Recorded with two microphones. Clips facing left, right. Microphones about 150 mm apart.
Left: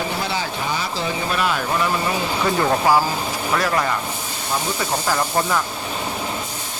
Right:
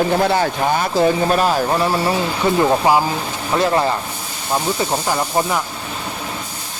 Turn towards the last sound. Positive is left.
turn(degrees=-20)  # may be behind; listen again after turning